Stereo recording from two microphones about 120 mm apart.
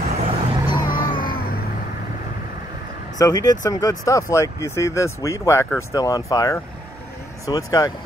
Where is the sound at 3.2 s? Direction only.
30° left (ahead or behind).